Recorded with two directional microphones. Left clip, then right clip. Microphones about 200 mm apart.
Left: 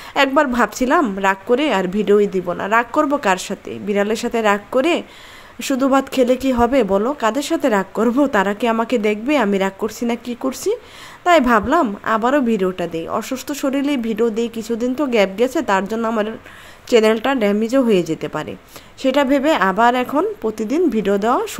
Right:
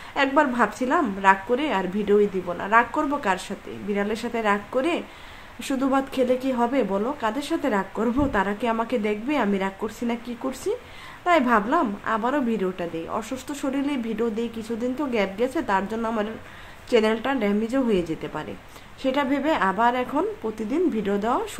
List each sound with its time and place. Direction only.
0.1 s speech: 40° left (ahead or behind)